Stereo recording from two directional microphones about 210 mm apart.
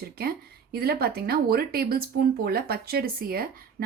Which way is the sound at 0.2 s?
45° right (ahead or behind).